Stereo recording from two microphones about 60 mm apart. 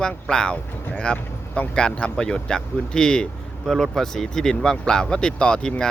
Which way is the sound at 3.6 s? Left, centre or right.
Centre.